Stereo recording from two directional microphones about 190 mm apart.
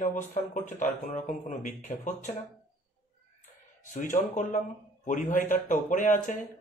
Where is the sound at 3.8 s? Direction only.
45° left (ahead or behind).